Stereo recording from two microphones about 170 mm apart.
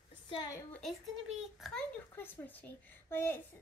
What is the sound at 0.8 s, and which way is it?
Speech, centre (ahead or behind).